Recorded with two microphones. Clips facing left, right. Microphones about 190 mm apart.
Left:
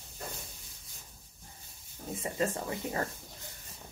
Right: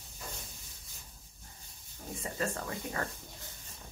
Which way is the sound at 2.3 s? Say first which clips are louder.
Left 3 dB; 20° left (ahead or behind).